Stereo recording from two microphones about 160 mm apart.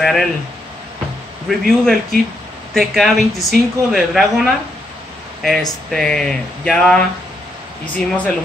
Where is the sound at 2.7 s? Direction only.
Centre (ahead or behind).